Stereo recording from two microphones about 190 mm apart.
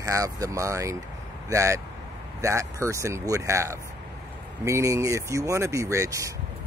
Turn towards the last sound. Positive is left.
turn(degrees=-15)  # may be behind; listen again after turning